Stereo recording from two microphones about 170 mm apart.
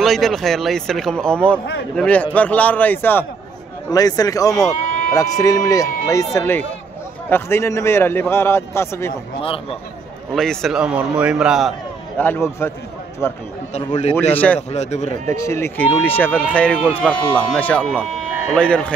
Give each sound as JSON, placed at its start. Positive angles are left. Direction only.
{"t": 0.0, "sound": "a man's voice", "side_deg": 0}
{"t": 3.9, "sound": "speech", "side_deg": 20}
{"t": 4.8, "sound": "sheep", "side_deg": 50}
{"t": 5.4, "sound": "a man's voice", "side_deg": 20}
{"t": 9.4, "sound": "speech", "side_deg": 35}
{"t": 10.3, "sound": "speech", "side_deg": 0}
{"t": 12.2, "sound": "a man's voice", "side_deg": 15}
{"t": 13.7, "sound": "speech", "side_deg": 40}
{"t": 14.3, "sound": "a man's voice", "side_deg": 10}
{"t": 14.7, "sound": "speech", "side_deg": 40}
{"t": 15.3, "sound": "a man's voice", "side_deg": 15}